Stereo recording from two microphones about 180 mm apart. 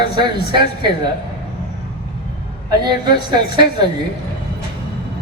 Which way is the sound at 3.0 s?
25° right (ahead or behind).